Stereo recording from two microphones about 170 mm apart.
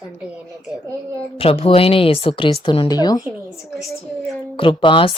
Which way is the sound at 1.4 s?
35° left (ahead or behind).